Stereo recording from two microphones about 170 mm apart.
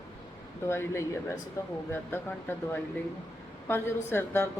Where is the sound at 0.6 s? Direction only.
15° left (ahead or behind).